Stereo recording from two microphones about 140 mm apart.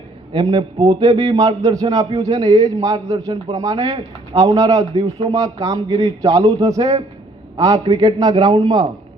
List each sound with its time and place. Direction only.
0.3 s a man's voice: 30° right (ahead or behind)